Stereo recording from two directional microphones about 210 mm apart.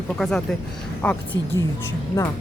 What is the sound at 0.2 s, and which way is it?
Speech, 5° left (ahead or behind).